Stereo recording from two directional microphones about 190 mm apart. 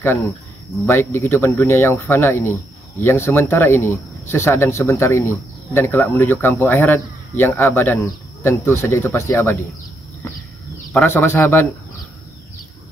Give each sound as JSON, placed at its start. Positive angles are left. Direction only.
{"t": 0.8, "sound": "speech", "side_deg": 15}
{"t": 10.9, "sound": "speech", "side_deg": 10}